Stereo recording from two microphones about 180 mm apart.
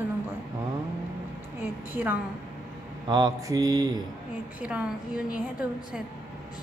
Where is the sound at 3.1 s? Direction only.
20° right (ahead or behind).